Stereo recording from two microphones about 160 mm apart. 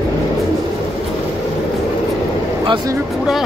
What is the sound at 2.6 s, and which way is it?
Speech, 25° right (ahead or behind).